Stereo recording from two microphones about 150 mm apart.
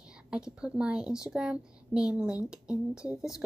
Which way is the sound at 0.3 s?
5° right (ahead or behind).